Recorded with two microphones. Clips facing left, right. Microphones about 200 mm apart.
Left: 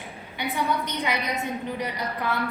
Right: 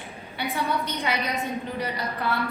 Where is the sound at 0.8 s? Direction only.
15° left (ahead or behind).